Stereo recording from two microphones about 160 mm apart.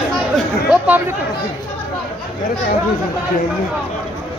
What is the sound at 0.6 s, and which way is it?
Chatter, 10° right (ahead or behind).